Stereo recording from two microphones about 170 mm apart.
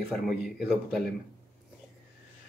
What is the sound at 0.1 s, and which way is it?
Speech, 5° right (ahead or behind).